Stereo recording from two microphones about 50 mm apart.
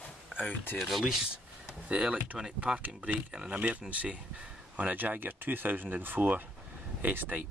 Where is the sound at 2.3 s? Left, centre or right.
Centre.